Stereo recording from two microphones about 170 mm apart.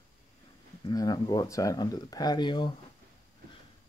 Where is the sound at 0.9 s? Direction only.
20° left (ahead or behind).